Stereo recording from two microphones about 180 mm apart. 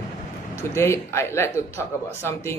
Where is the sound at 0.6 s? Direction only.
15° left (ahead or behind).